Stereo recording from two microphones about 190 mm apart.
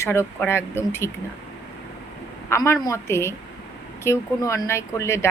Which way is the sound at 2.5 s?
15° left (ahead or behind).